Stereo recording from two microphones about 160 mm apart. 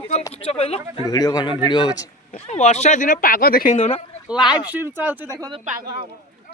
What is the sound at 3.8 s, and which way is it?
Speech, 40° left (ahead or behind).